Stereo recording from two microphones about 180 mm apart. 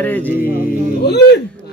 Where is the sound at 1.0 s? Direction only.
65° left (ahead or behind).